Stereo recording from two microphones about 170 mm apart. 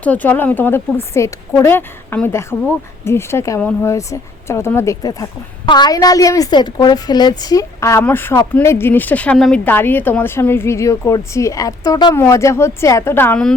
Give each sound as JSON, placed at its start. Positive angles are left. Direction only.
{"t": 0.0, "sound": "speech", "side_deg": 10}